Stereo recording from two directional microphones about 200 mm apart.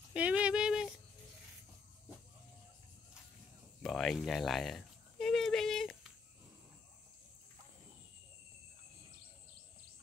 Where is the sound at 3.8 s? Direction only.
Centre (ahead or behind).